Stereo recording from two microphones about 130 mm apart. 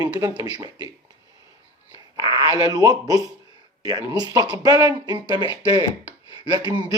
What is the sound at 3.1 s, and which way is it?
Speech, 25° right (ahead or behind).